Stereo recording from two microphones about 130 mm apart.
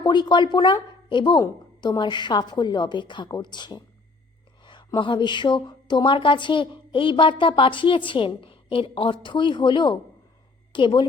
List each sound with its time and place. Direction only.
0.0 s a woman's voice: 35° left (ahead or behind)